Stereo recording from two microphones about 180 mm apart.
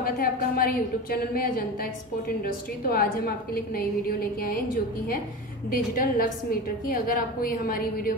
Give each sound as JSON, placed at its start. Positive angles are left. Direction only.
{"t": 0.0, "sound": "a woman's voice", "side_deg": 55}
{"t": 5.7, "sound": "a woman's voice", "side_deg": 50}